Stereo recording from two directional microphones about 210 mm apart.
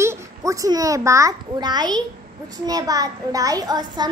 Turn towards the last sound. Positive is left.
turn(degrees=-20)  # may be behind; listen again after turning